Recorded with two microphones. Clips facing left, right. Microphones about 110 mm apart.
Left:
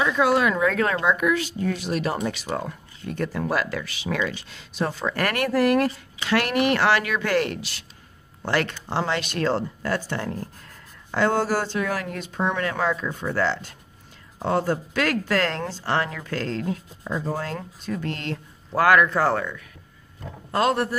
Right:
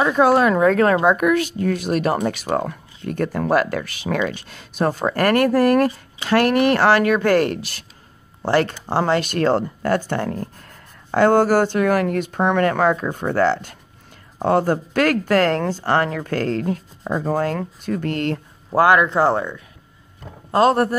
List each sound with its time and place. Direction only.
0.0 s speech: 45° right (ahead or behind)
1.0 s speech: 55° right (ahead or behind)
8.4 s speech: 35° right (ahead or behind); by 18.4 s 50° right (ahead or behind)
18.7 s speech: 25° right (ahead or behind)